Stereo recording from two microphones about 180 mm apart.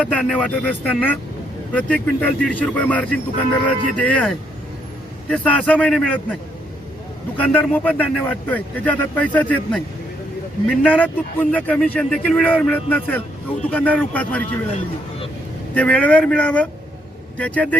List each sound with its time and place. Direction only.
0.0 s speech: 5° left (ahead or behind)
7.3 s speech: 10° left (ahead or behind)
14.7 s speech: 40° left (ahead or behind)
15.7 s speech: 5° left (ahead or behind)